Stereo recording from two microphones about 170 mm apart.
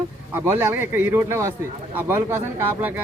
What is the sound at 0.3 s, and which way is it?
Speech, 15° right (ahead or behind).